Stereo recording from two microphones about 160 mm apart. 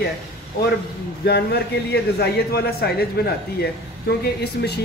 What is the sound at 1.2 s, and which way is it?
A man's voice, 85° left.